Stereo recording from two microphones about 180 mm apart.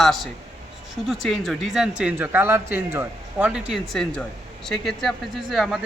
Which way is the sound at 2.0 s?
10° right (ahead or behind).